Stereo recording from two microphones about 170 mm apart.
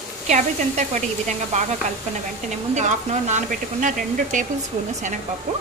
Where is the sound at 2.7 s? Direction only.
45° right (ahead or behind).